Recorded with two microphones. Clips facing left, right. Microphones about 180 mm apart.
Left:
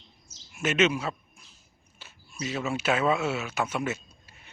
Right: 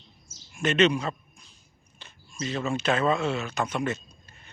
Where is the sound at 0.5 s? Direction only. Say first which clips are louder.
Right 2 dB; 5° left (ahead or behind).